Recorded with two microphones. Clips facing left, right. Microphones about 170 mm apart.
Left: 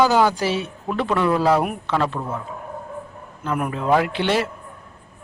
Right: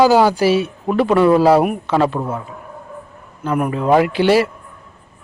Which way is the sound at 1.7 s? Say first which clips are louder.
Right 6 dB; 10° right (ahead or behind).